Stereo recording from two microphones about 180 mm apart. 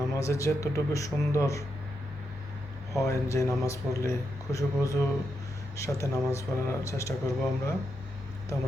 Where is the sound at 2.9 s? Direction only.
15° left (ahead or behind).